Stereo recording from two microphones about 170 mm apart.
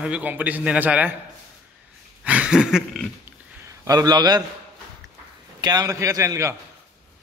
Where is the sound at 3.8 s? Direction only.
25° right (ahead or behind).